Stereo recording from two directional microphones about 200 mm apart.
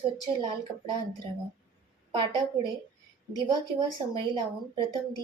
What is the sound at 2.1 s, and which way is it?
Speech, 20° right (ahead or behind).